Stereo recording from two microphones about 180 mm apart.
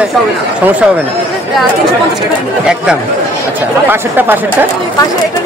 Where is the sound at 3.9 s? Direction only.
10° right (ahead or behind).